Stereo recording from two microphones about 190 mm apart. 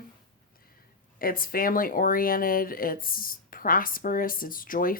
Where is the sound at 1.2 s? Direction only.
50° left (ahead or behind).